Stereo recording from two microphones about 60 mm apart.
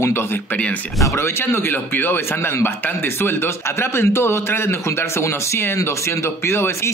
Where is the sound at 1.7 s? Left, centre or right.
Left.